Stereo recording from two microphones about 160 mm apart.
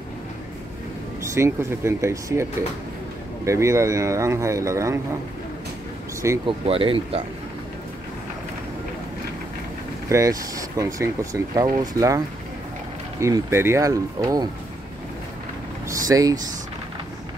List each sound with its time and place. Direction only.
1.3 s speech: 15° right (ahead or behind)
3.4 s speech: 20° right (ahead or behind)
6.4 s speech: 35° right (ahead or behind)
10.0 s speech: 20° right (ahead or behind)
13.2 s speech: 15° right (ahead or behind)
15.9 s speech: 20° right (ahead or behind)